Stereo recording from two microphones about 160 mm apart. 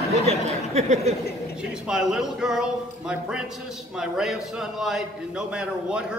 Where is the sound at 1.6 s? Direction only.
5° right (ahead or behind).